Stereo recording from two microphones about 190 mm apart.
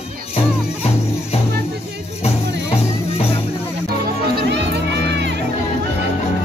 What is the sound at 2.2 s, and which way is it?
Music, 30° left (ahead or behind).